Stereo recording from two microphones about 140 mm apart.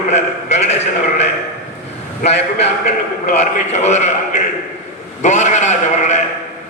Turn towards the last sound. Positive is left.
turn(degrees=55)  # may be behind; listen again after turning